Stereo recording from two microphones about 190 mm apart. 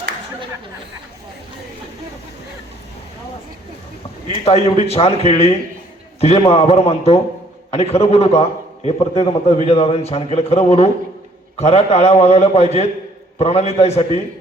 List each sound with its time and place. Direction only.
4.4 s a man's voice: 35° left (ahead or behind)